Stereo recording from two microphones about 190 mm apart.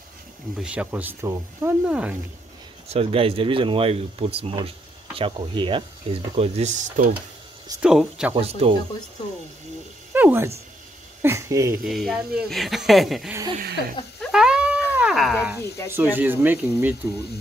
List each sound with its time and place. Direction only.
0.6 s speech: 5° right (ahead or behind)
2.9 s speech: 30° right (ahead or behind)
7.8 s speech: 5° right (ahead or behind)
8.4 s speech: 30° right (ahead or behind)
10.1 s speech: 10° right (ahead or behind)
11.8 s speech: centre (ahead or behind)
13.3 s speech: 20° right (ahead or behind)
13.6 s a sound: 50° right (ahead or behind)
14.2 s cat: 5° right (ahead or behind)
15.0 s a sound: 5° right (ahead or behind)
15.9 s speech: 10° right (ahead or behind)